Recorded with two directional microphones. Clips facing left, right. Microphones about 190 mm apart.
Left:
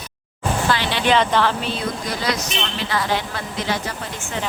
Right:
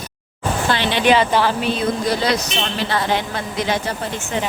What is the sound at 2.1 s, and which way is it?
A woman's voice, 35° right (ahead or behind).